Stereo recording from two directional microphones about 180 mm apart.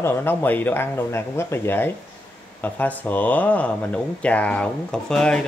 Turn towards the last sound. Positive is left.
turn(degrees=5)  # may be behind; listen again after turning